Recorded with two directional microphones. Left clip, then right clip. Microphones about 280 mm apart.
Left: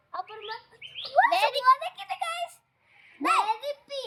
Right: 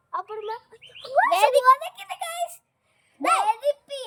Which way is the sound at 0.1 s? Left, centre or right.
Right.